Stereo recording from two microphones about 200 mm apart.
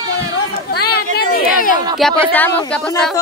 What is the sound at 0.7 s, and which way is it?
Speech, 50° left (ahead or behind).